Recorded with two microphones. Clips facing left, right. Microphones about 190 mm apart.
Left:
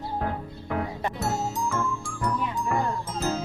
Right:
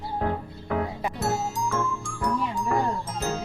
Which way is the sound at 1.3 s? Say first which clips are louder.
Right 1 dB; centre (ahead or behind).